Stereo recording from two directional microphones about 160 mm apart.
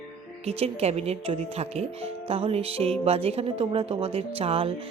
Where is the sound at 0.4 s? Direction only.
40° right (ahead or behind).